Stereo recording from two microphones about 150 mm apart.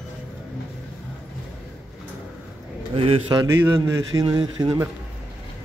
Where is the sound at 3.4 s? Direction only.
20° right (ahead or behind).